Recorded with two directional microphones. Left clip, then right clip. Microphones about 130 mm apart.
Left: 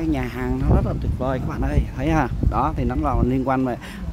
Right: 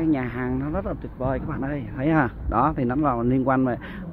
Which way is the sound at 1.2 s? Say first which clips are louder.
Left 2 dB; 45° left (ahead or behind).